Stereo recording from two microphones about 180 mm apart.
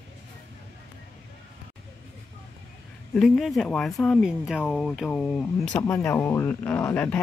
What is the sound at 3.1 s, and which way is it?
Speech, centre (ahead or behind).